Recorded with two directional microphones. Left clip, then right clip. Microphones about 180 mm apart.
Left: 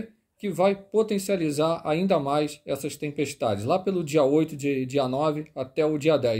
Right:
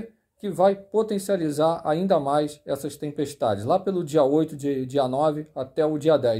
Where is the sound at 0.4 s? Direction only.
20° left (ahead or behind).